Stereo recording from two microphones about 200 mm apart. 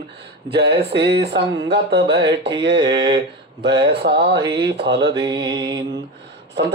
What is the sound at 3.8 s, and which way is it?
Speech, 55° right (ahead or behind).